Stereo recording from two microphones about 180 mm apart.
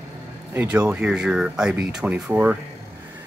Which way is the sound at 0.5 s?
10° right (ahead or behind).